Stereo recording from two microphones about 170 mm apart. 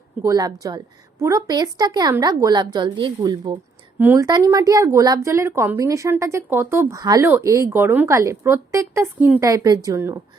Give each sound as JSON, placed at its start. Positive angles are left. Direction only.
{"t": 0.2, "sound": "a woman's voice", "side_deg": -20}
{"t": 3.9, "sound": "speech", "side_deg": -10}